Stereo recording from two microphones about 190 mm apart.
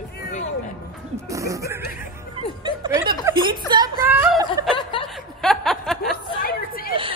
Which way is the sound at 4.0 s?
10° right (ahead or behind).